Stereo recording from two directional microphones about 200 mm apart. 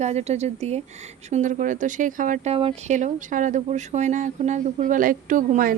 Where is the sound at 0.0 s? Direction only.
35° right (ahead or behind).